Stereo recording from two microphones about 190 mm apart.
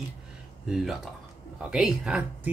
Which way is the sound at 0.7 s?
Centre (ahead or behind).